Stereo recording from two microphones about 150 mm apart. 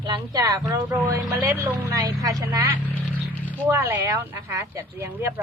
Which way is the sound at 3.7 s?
15° right (ahead or behind).